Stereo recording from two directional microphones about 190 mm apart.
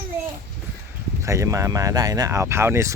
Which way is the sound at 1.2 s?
15° right (ahead or behind).